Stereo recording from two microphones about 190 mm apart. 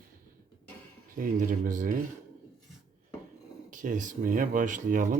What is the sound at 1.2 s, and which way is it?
Speech, 45° right (ahead or behind).